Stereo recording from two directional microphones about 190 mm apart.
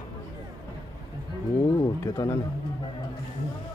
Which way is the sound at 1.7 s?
20° left (ahead or behind).